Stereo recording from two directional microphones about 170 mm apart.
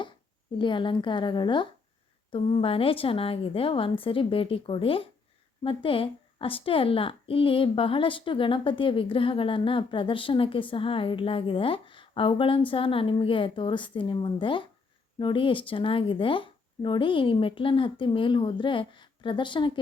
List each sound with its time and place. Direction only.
0.6 s a woman's voice: 30° left (ahead or behind)